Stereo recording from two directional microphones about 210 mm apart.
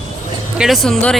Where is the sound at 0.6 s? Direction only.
Centre (ahead or behind).